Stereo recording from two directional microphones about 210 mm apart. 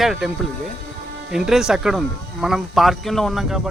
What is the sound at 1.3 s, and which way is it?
Speech, centre (ahead or behind).